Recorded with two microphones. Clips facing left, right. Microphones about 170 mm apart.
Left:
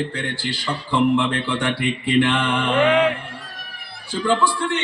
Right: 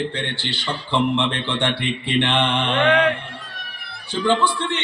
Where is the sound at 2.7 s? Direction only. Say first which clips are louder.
Left 1 dB; 5° left (ahead or behind).